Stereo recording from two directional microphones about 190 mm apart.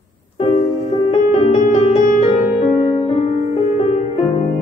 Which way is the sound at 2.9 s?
30° left (ahead or behind).